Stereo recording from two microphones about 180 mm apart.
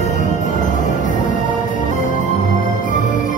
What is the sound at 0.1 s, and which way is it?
Music, 45° left (ahead or behind).